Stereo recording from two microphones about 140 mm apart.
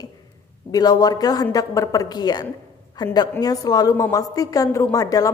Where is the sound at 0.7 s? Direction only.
25° left (ahead or behind).